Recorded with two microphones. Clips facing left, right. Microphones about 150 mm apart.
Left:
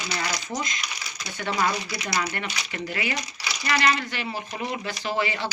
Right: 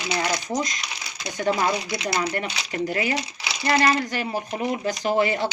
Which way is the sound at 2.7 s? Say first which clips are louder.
Right 6 dB; 40° right (ahead or behind).